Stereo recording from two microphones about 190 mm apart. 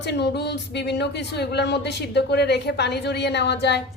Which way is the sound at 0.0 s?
60° left (ahead or behind).